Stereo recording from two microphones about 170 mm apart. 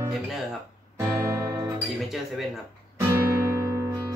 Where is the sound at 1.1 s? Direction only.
20° right (ahead or behind).